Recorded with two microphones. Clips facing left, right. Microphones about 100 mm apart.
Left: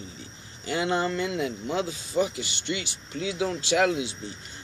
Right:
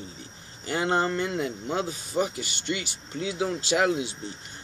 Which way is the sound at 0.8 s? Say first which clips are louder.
Right 1 dB; 45° right (ahead or behind).